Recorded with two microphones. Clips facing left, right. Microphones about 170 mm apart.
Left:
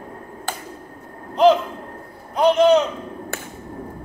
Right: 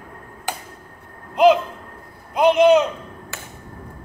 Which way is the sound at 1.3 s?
15° right (ahead or behind).